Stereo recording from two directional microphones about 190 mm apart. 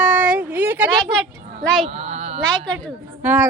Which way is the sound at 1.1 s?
Centre (ahead or behind).